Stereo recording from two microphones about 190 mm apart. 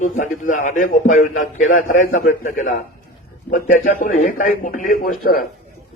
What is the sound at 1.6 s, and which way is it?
Speech, 90° left.